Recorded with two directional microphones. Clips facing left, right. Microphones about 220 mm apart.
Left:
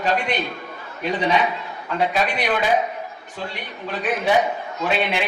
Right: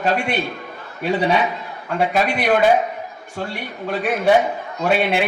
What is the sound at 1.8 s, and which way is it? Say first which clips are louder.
A man's voice: right 3 dB; 45° right (ahead or behind).